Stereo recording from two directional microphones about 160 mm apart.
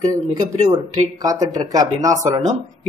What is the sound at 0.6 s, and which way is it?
Speech, 25° right (ahead or behind).